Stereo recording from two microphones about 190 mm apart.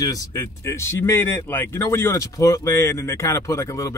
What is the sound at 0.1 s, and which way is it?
Speech, 15° left (ahead or behind).